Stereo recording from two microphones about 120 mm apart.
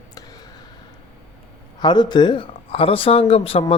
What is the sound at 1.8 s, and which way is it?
A man's voice, 40° left (ahead or behind).